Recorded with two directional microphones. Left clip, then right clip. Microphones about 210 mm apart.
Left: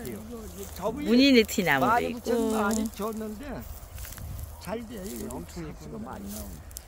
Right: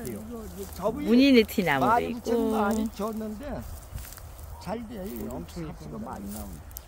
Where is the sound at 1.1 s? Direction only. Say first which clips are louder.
Even; 10° right (ahead or behind).